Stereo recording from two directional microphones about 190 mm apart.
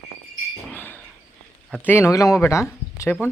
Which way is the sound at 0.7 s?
10° left (ahead or behind).